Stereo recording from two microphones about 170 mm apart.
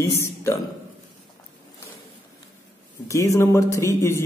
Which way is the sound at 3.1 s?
20° left (ahead or behind).